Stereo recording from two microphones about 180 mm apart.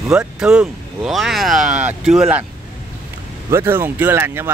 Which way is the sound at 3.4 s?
15° right (ahead or behind).